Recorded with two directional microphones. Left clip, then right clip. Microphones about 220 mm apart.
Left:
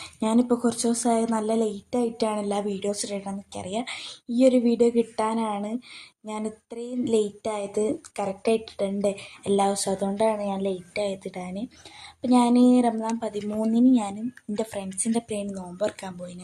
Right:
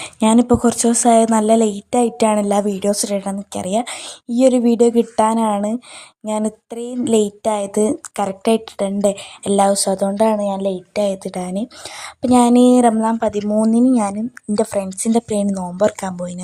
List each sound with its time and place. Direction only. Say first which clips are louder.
0.0 s speech: right 9 dB; 45° right (ahead or behind)